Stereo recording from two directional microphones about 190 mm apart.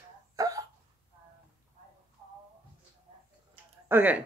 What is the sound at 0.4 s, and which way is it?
Hiccup, 15° right (ahead or behind).